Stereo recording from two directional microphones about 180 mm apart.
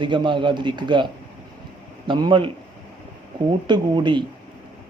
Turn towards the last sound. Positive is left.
turn(degrees=-25)  # may be behind; listen again after turning